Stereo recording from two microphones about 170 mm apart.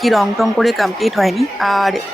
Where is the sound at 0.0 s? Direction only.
Centre (ahead or behind).